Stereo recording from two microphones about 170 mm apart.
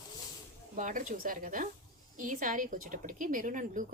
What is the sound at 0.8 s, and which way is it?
A woman's voice, 50° right (ahead or behind).